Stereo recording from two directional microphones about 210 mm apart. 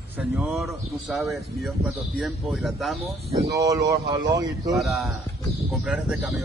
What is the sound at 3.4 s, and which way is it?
Speech, 15° right (ahead or behind).